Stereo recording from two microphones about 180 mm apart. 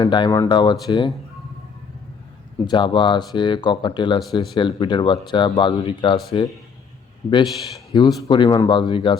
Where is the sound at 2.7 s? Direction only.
25° left (ahead or behind).